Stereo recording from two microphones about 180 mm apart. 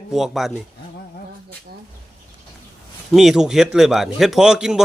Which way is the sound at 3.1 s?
Centre (ahead or behind).